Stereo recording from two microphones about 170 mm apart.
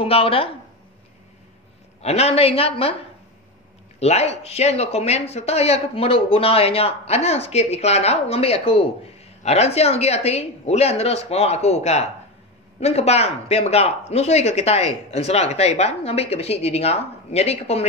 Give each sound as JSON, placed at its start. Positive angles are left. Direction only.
{"t": 0.0, "sound": "speech", "side_deg": 35}
{"t": 2.0, "sound": "speech", "side_deg": 35}
{"t": 4.0, "sound": "speech", "side_deg": 40}